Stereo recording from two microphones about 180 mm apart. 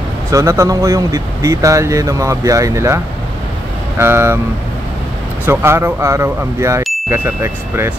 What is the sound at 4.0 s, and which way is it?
Speech, 15° right (ahead or behind).